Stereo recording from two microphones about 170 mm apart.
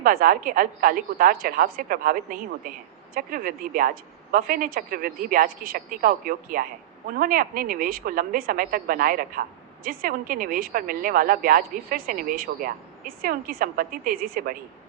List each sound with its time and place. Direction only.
0.0 s a woman's voice: 55° right (ahead or behind)